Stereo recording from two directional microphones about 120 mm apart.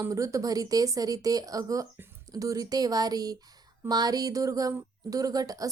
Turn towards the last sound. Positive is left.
turn(degrees=-30)  # may be behind; listen again after turning